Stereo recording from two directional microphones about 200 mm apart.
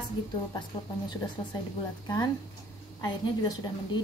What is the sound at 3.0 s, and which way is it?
A woman's voice, 20° left (ahead or behind).